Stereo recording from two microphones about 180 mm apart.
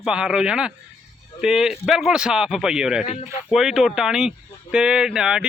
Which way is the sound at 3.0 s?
35° left (ahead or behind).